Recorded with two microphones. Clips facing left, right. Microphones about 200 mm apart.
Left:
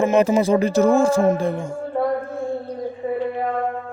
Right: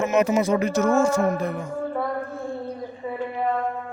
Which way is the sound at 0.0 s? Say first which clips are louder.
Left 4 dB; 30° left (ahead or behind).